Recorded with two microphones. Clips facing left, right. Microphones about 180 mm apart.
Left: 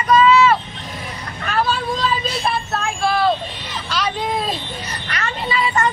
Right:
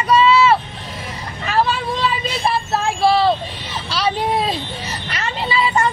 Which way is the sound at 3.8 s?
30° right (ahead or behind).